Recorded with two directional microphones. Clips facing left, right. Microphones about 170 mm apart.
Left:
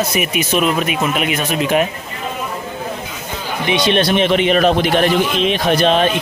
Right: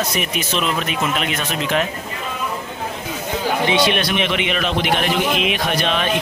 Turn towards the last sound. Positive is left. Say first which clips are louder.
# left 7 dB
turn(degrees=35)  # may be behind; listen again after turning